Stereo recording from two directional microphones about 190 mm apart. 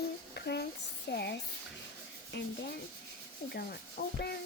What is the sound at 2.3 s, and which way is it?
Rub, 70° left (ahead or behind).